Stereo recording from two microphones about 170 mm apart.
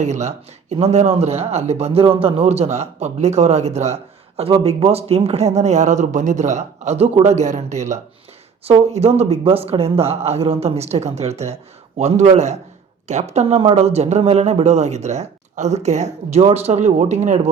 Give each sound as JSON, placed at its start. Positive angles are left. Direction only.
{"t": 0.0, "sound": "speech", "side_deg": -40}